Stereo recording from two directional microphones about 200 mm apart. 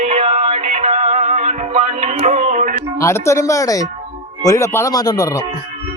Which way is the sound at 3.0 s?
15° left (ahead or behind).